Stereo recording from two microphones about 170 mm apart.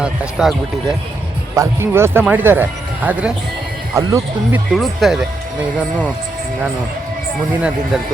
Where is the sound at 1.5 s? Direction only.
15° right (ahead or behind).